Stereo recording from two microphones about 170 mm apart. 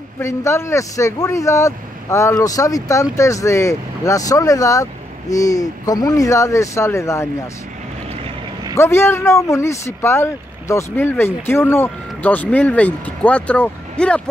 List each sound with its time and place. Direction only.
0.2 s speech: 15° left (ahead or behind)
8.7 s speech: 15° left (ahead or behind)